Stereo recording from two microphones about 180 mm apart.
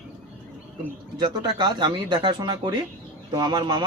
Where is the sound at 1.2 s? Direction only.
25° right (ahead or behind).